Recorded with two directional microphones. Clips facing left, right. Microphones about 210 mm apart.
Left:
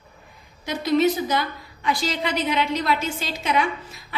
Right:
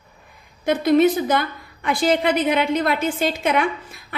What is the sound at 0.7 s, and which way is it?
A woman's voice, 55° right (ahead or behind).